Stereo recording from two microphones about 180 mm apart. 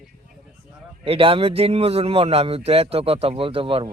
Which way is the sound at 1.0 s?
30° right (ahead or behind).